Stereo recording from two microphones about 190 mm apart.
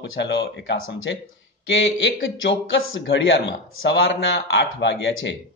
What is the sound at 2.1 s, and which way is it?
Speech, 80° left.